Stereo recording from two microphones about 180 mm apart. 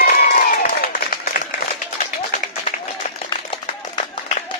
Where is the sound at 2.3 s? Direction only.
40° left (ahead or behind).